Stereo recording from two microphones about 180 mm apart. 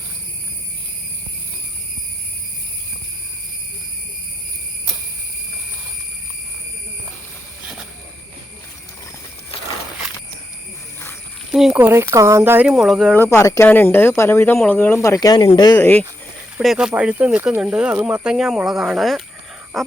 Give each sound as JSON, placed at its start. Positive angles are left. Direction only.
{"t": 11.5, "sound": "speech", "side_deg": -5}
{"t": 13.2, "sound": "speech", "side_deg": 15}
{"t": 15.0, "sound": "speech", "side_deg": 20}
{"t": 15.8, "sound": "speech", "side_deg": 10}
{"t": 16.6, "sound": "speech", "side_deg": -5}
{"t": 19.7, "sound": "a sound", "side_deg": 0}